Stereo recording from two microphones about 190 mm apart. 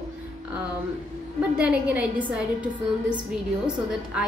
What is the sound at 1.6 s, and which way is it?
A woman's voice, 5° right (ahead or behind).